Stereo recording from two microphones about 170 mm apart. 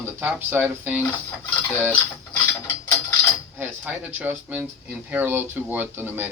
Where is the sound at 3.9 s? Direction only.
10° right (ahead or behind).